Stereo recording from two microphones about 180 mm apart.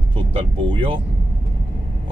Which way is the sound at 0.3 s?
30° right (ahead or behind).